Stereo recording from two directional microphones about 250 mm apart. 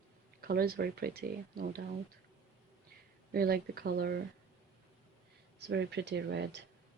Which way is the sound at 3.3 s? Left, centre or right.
Right.